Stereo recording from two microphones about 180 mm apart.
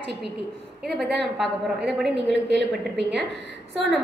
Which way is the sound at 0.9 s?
Centre (ahead or behind).